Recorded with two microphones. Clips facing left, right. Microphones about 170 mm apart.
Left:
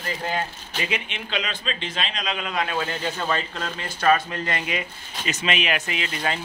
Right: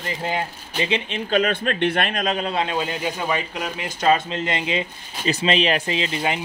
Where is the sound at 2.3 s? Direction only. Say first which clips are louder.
Right 4 dB; 30° right (ahead or behind).